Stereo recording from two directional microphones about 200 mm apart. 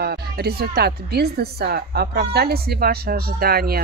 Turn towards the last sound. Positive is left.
turn(degrees=-50)  # may be behind; listen again after turning